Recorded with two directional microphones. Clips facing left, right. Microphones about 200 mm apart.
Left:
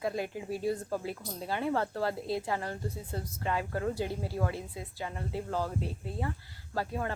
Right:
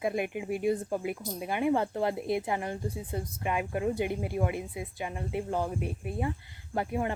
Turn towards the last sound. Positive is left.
turn(degrees=-20)  # may be behind; listen again after turning